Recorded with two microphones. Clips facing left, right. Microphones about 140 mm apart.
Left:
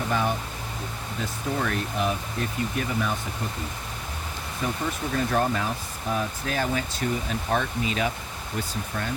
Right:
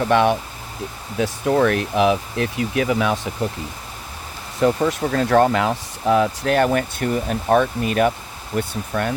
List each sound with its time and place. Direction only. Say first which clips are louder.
0.1 s speech: right 10 dB; 80° right
4.6 s speech: right 11 dB; 90° right; by 9.1 s 65° right (ahead or behind)